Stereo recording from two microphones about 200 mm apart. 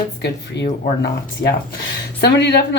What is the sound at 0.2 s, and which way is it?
A woman's voice, 60° left (ahead or behind).